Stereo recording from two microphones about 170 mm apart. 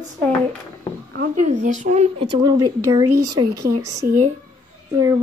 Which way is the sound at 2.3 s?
25° right (ahead or behind).